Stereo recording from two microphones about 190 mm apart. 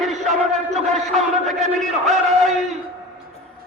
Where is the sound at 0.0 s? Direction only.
Centre (ahead or behind).